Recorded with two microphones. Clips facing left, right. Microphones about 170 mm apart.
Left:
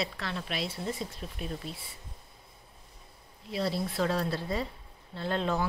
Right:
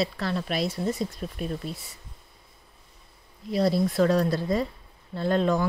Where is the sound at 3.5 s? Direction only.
40° right (ahead or behind).